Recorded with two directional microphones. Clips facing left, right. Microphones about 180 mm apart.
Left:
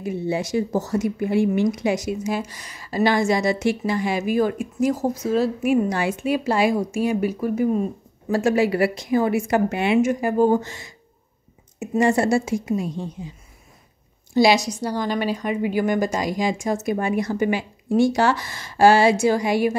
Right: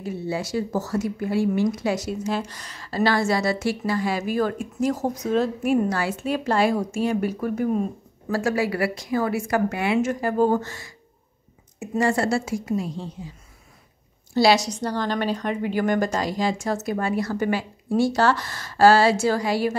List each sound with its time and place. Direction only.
0.0 s a woman's voice: 15° left (ahead or behind)
8.3 s a woman's voice: 20° left (ahead or behind)
10.0 s a woman's voice: 10° left (ahead or behind)
12.0 s a woman's voice: 20° left (ahead or behind)
14.3 s a woman's voice: 15° left (ahead or behind)